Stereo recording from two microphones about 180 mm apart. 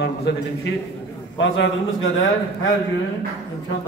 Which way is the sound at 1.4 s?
90° left.